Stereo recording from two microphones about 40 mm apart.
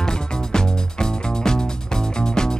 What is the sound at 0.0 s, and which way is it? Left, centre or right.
Music, centre.